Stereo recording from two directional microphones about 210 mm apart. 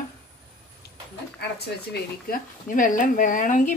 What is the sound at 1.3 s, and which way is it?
Speech, 50° left (ahead or behind).